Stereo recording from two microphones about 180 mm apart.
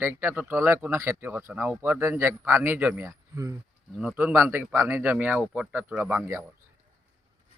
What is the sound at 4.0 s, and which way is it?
Speech, 5° right (ahead or behind).